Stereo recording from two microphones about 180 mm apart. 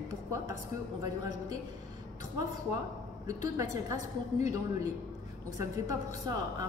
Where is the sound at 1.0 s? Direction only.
20° right (ahead or behind).